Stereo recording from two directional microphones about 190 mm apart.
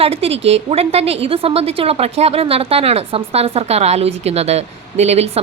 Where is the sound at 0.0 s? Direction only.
30° right (ahead or behind).